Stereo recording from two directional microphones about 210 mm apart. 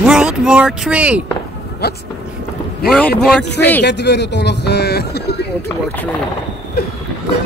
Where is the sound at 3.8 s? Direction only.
55° left (ahead or behind).